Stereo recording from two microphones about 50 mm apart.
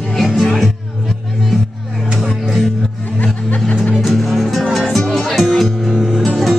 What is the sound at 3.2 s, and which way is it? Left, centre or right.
Snicker, left.